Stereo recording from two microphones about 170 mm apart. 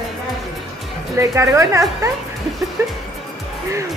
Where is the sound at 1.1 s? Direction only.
15° right (ahead or behind).